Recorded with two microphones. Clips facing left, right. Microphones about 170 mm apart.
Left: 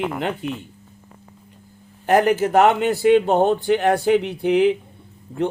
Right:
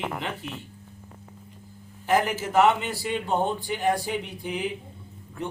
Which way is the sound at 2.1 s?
60° left (ahead or behind).